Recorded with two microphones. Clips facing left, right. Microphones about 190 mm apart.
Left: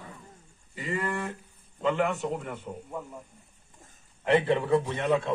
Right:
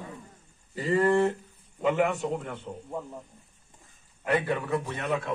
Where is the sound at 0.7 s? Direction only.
35° right (ahead or behind).